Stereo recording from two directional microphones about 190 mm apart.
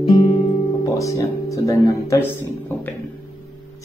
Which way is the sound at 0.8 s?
15° left (ahead or behind).